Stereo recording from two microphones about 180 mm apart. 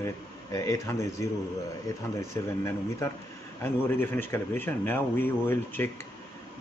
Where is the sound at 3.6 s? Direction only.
10° left (ahead or behind).